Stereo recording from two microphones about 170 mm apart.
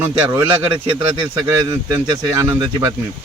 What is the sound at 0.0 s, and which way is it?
Speech, 15° right (ahead or behind).